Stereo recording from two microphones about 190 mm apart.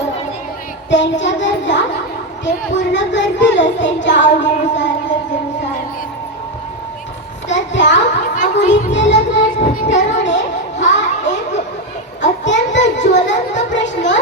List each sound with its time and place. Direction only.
0.9 s speech: 70° left (ahead or behind)
4.7 s music: 70° left (ahead or behind)
7.4 s speech: 70° left (ahead or behind)
8.9 s music: 70° left (ahead or behind)
10.0 s a sound: 70° left (ahead or behind)
12.2 s children playing: 70° left (ahead or behind)